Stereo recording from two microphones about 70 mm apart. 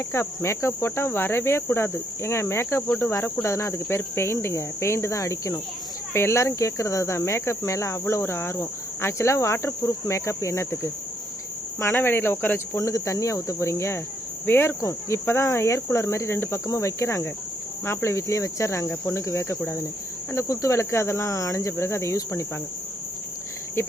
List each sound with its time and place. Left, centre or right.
0.1 s cricket: left
3.0 s speech: left
3.4 s cricket: left
4.4 s speech: left
11.8 s cricket: left
12.8 s speech: left
14.4 s cricket: left
14.8 s speech: left
16.6 s speech: left
18.9 s cricket: left
20.3 s speech: left